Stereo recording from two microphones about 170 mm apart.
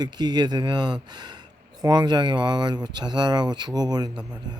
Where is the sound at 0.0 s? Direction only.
25° right (ahead or behind).